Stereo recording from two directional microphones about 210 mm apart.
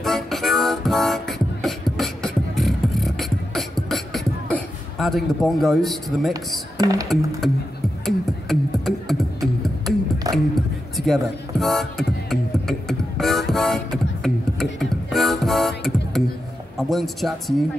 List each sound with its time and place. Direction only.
0.0 s beatboxing: centre (ahead or behind)
6.8 s speech: 15° right (ahead or behind)
8.0 s music: centre (ahead or behind)
10.3 s music: 15° right (ahead or behind)
11.0 s music: centre (ahead or behind)
16.7 s speech: centre (ahead or behind)